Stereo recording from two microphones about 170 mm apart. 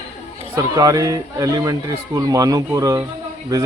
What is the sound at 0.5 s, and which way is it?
Speech, 20° right (ahead or behind).